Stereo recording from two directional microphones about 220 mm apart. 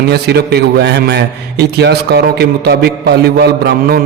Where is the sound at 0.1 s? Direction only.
45° right (ahead or behind).